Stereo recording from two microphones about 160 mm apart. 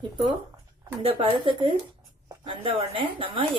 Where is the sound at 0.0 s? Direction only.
30° right (ahead or behind).